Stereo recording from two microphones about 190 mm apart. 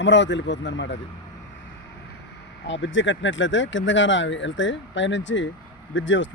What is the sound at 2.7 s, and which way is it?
Speech, 75° left (ahead or behind).